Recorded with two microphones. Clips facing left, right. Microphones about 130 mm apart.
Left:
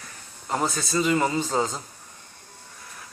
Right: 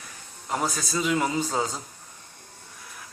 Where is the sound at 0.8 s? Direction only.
5° right (ahead or behind).